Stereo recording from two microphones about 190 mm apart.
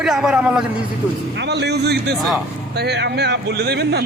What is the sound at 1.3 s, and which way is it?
Speech, 65° right (ahead or behind).